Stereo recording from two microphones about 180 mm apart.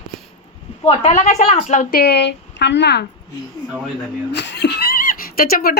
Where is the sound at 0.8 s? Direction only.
35° left (ahead or behind).